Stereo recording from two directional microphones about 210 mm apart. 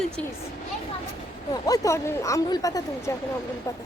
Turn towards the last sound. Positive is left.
turn(degrees=15)  # may be behind; listen again after turning